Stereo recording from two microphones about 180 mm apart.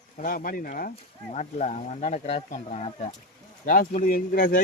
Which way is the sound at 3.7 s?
50° left (ahead or behind).